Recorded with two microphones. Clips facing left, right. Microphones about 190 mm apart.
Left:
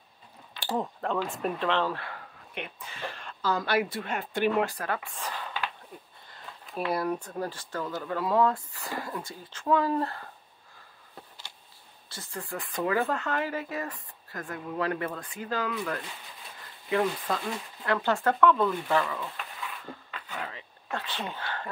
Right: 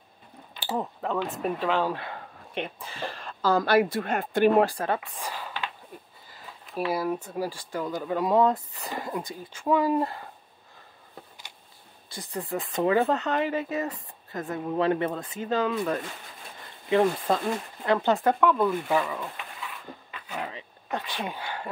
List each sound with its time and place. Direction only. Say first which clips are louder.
0.6 s speech: even; centre (ahead or behind); by 2.2 s 20° right (ahead or behind)
2.5 s speech: right 6 dB; 30° right (ahead or behind)
4.7 s speech: right 4 dB; 25° right (ahead or behind)
12.1 s speech: right 6 dB; 15° right (ahead or behind)
20.3 s a sound: right 4 dB; 20° right (ahead or behind)